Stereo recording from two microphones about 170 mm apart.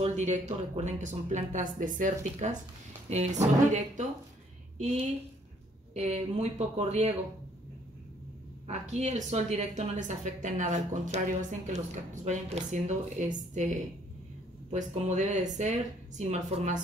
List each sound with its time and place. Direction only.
0.0 s speech: 40° right (ahead or behind)
5.9 s speech: 40° right (ahead or behind)
8.6 s speech: 40° right (ahead or behind)
14.7 s speech: 45° right (ahead or behind)